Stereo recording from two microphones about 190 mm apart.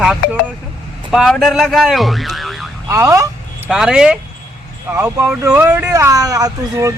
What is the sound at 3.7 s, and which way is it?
Speech, 5° right (ahead or behind).